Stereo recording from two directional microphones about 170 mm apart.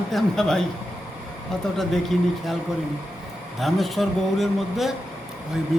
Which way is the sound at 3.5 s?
Centre (ahead or behind).